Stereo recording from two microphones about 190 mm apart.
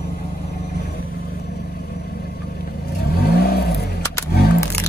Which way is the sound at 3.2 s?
55° left (ahead or behind).